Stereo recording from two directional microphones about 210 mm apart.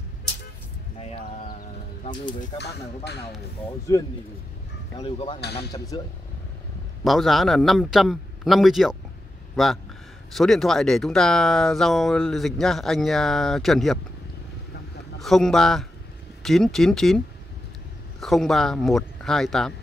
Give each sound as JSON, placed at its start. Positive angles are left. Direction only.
{"t": 0.9, "sound": "a sound", "side_deg": 35}
{"t": 3.9, "sound": "speech", "side_deg": 15}
{"t": 7.1, "sound": "speech", "side_deg": 0}
{"t": 15.2, "sound": "speech", "side_deg": 0}
{"t": 18.2, "sound": "speech", "side_deg": 0}